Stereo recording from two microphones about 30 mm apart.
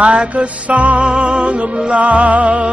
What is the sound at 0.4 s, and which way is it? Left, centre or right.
Music, right.